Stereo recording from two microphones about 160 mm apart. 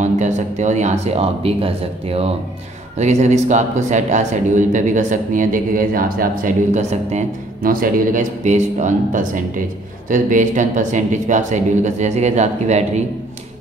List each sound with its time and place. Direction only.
0.0 s speech: 50° right (ahead or behind)
7.6 s speech: 60° right (ahead or behind)